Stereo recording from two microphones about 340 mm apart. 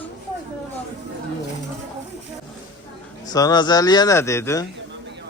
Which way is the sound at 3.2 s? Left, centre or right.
Centre.